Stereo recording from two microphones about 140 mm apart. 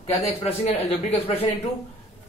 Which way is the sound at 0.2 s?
45° left (ahead or behind).